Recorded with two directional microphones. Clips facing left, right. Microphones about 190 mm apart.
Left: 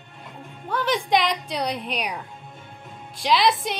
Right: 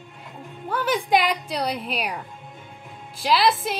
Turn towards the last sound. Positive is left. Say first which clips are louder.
# even
turn(degrees=-5)  # may be behind; listen again after turning